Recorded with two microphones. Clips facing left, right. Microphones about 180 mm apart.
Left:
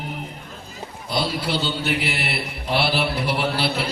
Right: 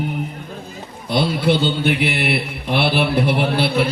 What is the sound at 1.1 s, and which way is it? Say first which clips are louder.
Mantra: right 7 dB; 55° right (ahead or behind).